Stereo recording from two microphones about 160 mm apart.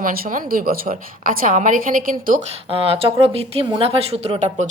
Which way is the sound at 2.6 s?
35° right (ahead or behind).